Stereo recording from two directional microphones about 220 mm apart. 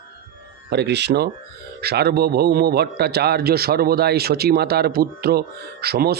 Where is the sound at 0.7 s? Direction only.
50° right (ahead or behind).